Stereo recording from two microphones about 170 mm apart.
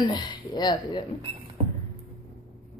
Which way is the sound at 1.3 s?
30° right (ahead or behind).